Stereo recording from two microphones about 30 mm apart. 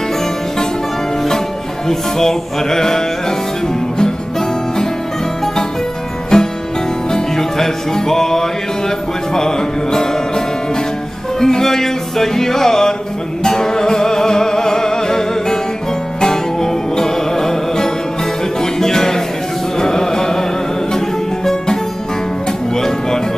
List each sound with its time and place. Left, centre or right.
1.9 s music: centre
6.3 s music: left
11.3 s music: centre